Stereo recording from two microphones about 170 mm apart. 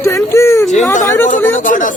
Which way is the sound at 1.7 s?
55° left (ahead or behind).